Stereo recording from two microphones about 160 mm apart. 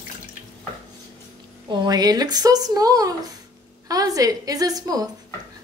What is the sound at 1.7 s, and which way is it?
Speech, 25° right (ahead or behind).